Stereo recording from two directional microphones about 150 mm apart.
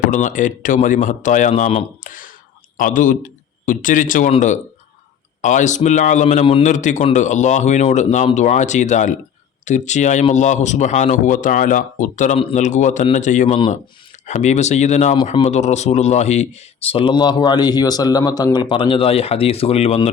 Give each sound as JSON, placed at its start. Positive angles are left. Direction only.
{"t": 0.1, "sound": "a man's voice", "side_deg": 55}